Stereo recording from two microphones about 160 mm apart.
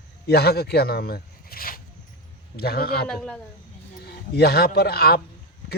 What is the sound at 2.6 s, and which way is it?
Speech, 75° left (ahead or behind).